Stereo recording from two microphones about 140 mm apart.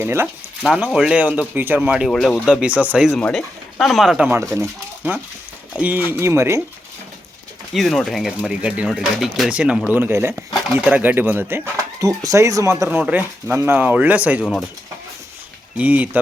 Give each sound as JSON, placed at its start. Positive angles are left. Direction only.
{"t": 0.0, "sound": "speech", "side_deg": -15}
{"t": 0.6, "sound": "speech", "side_deg": 0}
{"t": 2.0, "sound": "speech", "side_deg": 0}
{"t": 3.1, "sound": "speech", "side_deg": 10}
{"t": 5.0, "sound": "speech", "side_deg": -10}
{"t": 7.7, "sound": "speech", "side_deg": 0}
{"t": 12.8, "sound": "speech", "side_deg": -10}
{"t": 15.8, "sound": "speech", "side_deg": -10}